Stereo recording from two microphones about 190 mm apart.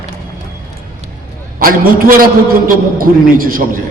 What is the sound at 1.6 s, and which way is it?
A man's voice, 50° right (ahead or behind).